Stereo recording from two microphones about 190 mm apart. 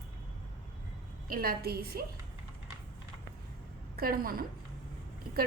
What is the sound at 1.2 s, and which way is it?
Speech, 50° right (ahead or behind).